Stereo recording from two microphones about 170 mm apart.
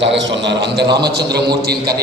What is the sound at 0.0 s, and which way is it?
A man's voice, 90° right.